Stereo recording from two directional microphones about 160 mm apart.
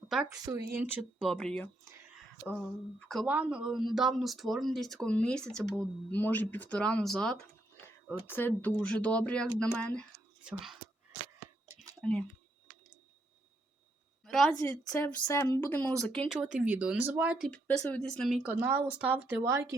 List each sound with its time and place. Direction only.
0.5 s speech: 20° right (ahead or behind)
1.2 s speech: centre (ahead or behind)
11.9 s speech: 5° left (ahead or behind)
14.3 s a woman's voice: centre (ahead or behind)
14.6 s speech: 15° left (ahead or behind)
16.3 s speech: 5° right (ahead or behind)